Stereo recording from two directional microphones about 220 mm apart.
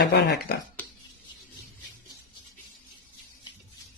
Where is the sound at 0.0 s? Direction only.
50° left (ahead or behind).